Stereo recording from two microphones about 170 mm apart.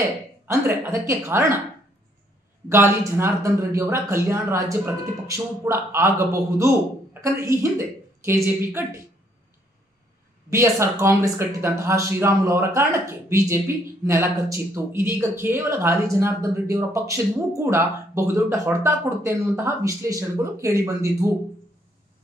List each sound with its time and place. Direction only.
0.5 s speech: 15° right (ahead or behind)
2.7 s speech: 15° right (ahead or behind)
10.5 s speech: 15° right (ahead or behind)